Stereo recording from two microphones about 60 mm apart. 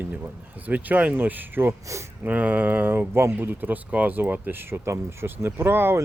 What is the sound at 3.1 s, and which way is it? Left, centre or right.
Speech, right.